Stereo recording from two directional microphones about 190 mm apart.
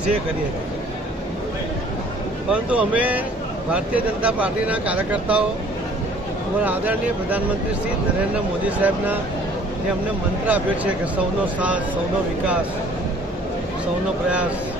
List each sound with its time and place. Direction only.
2.5 s speech: 5° right (ahead or behind)
6.6 s speech: 10° right (ahead or behind)
8.6 s speech: 10° right (ahead or behind)
10.4 s speech: 10° right (ahead or behind)